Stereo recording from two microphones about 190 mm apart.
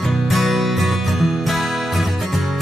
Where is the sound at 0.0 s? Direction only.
Centre (ahead or behind).